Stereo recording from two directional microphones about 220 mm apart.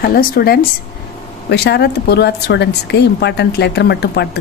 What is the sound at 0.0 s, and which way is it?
Speech, 45° left (ahead or behind).